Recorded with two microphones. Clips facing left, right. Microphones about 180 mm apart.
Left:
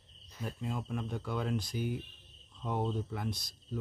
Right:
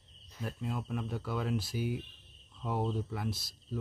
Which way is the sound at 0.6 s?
5° right (ahead or behind).